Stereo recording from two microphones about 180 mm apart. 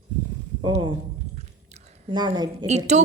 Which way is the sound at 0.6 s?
25° right (ahead or behind).